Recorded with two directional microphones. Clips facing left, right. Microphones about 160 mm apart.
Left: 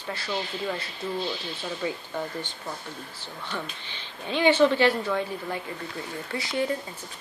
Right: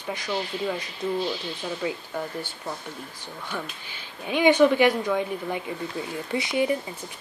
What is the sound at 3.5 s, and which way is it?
Speech, 10° right (ahead or behind).